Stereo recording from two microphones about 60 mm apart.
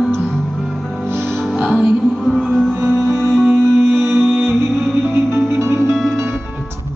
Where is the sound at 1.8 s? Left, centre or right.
Centre.